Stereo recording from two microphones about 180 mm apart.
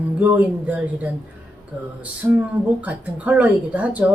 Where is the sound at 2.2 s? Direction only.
10° right (ahead or behind).